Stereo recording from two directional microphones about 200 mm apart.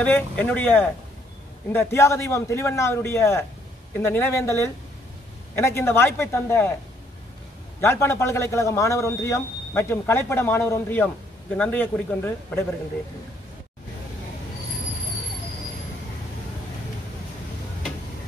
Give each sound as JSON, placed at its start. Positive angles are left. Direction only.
{"t": 0.0, "sound": "speech", "side_deg": 10}
{"t": 7.8, "sound": "speech", "side_deg": 15}